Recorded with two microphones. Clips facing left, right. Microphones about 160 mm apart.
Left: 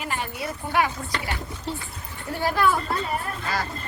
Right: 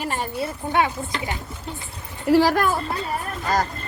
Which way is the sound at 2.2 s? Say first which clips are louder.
Right 11 dB; 90° right.